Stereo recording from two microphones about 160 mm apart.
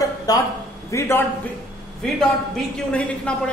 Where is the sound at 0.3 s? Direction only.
25° left (ahead or behind).